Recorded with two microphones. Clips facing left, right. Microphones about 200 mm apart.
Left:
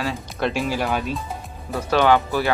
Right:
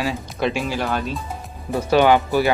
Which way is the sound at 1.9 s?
15° right (ahead or behind).